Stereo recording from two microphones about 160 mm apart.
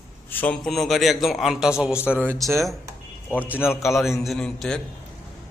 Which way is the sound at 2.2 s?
15° right (ahead or behind).